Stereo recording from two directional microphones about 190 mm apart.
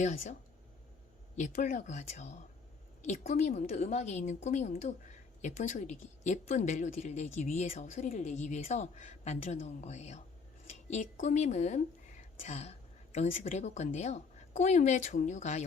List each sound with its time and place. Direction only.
0.0 s a woman's voice: 40° left (ahead or behind)
1.4 s a woman's voice: 40° left (ahead or behind)